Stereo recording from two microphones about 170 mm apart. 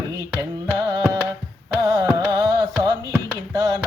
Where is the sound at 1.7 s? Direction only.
20° right (ahead or behind).